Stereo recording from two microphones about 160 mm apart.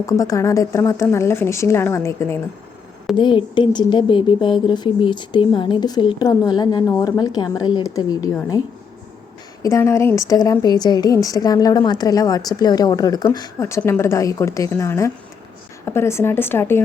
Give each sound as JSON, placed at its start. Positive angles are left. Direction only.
{"t": 0.0, "sound": "speech", "side_deg": 20}
{"t": 3.2, "sound": "a woman's voice", "side_deg": 30}
{"t": 9.6, "sound": "a woman's voice", "side_deg": 20}